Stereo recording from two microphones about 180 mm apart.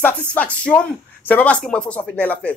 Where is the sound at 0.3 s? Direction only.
10° left (ahead or behind).